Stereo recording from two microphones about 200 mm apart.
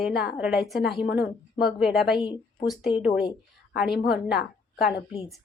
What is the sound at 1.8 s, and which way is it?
A woman's voice, centre (ahead or behind).